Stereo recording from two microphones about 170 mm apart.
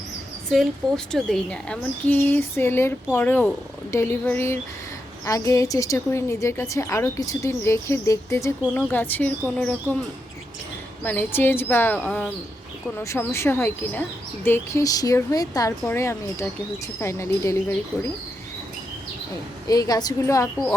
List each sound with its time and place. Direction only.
0.5 s a woman's voice: centre (ahead or behind)
11.0 s a woman's voice: 10° left (ahead or behind)
13.0 s a woman's voice: 15° left (ahead or behind)
19.6 s speech: 20° left (ahead or behind)